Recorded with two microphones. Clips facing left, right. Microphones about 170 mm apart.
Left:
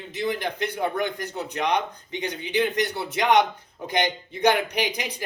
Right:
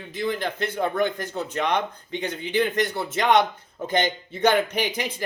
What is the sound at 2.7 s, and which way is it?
A man's voice, 15° left (ahead or behind).